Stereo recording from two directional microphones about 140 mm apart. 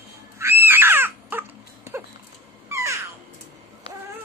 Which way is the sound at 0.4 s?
15° right (ahead or behind).